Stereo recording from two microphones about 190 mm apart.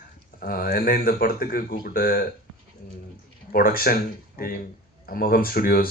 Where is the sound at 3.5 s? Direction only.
50° left (ahead or behind).